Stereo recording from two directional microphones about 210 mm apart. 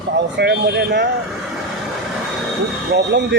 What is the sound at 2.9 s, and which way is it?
Speech, 55° right (ahead or behind).